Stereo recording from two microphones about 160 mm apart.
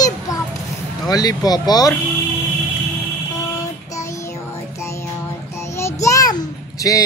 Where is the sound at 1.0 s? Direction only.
25° left (ahead or behind).